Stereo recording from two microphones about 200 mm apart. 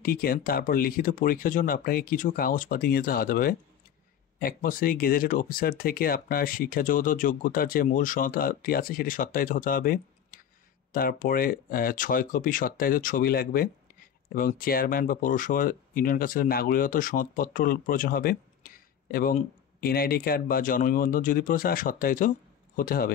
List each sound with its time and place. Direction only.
0.0 s speech: 45° left (ahead or behind)